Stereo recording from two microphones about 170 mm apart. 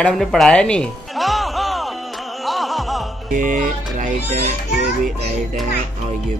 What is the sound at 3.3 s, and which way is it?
Music, 50° right (ahead or behind).